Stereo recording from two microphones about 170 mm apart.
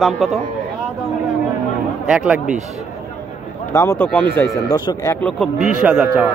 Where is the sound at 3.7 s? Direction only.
15° left (ahead or behind).